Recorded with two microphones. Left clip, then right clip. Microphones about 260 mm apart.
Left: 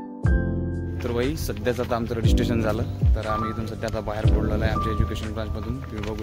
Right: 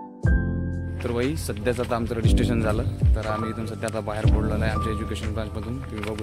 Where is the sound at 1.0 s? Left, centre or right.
Centre.